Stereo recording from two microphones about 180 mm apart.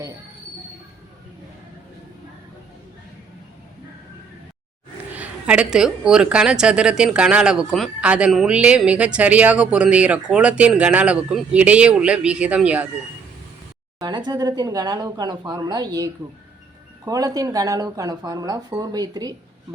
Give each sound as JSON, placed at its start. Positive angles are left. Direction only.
{"t": 5.1, "sound": "a woman's voice", "side_deg": -5}
{"t": 14.0, "sound": "speech", "side_deg": -25}
{"t": 17.1, "sound": "speech", "side_deg": -20}